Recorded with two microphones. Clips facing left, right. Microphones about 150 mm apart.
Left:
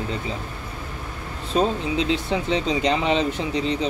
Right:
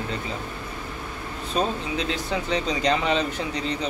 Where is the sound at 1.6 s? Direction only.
25° left (ahead or behind).